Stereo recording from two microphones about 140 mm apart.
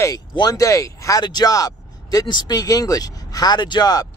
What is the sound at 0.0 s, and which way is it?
Speech, 25° left (ahead or behind).